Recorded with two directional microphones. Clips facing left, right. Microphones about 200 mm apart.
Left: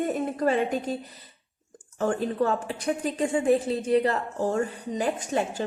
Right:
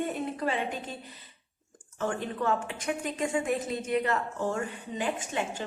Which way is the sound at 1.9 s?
35° left (ahead or behind).